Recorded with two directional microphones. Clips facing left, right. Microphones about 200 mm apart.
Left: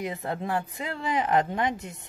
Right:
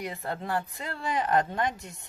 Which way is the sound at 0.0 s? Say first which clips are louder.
Left 3 dB; 20° left (ahead or behind).